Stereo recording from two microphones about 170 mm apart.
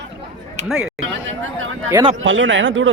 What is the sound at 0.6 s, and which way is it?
Speech, 5° right (ahead or behind).